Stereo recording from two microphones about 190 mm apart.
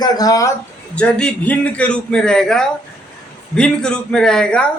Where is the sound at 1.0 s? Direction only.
5° left (ahead or behind).